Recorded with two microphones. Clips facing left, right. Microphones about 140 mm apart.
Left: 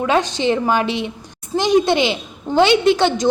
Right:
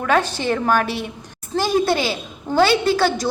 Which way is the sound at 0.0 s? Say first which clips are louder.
Left 2 dB; 15° left (ahead or behind).